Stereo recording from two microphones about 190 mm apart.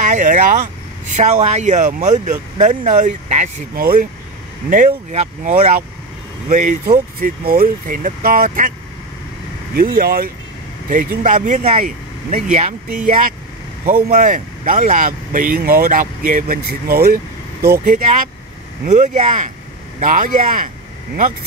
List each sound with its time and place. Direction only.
0.1 s speech: 45° right (ahead or behind)
9.8 s speech: 50° right (ahead or behind)
11.2 s speech: 40° right (ahead or behind)